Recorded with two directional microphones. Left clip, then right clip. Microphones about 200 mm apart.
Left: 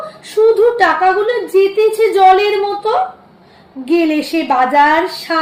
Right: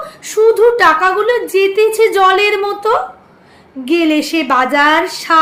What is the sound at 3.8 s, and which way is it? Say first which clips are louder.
A woman's voice: right 1 dB; 20° right (ahead or behind).